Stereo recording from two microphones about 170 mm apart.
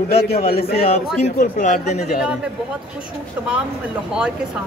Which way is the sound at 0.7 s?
35° left (ahead or behind).